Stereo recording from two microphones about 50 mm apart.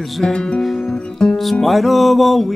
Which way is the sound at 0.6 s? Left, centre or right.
Centre.